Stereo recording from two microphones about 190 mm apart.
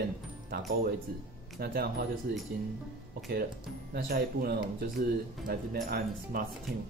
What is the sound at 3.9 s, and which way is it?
Speech, 55° right (ahead or behind).